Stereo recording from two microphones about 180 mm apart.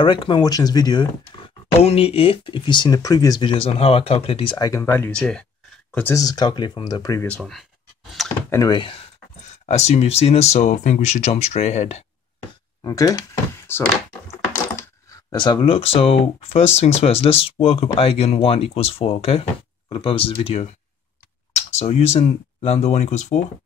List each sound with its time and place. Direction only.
0.0 s speech: 30° left (ahead or behind)
7.2 s speech: centre (ahead or behind)
8.5 s speech: 20° left (ahead or behind)
9.7 s speech: 35° left (ahead or behind)
12.8 s speech: 20° left (ahead or behind)
15.0 s speech: 25° left (ahead or behind)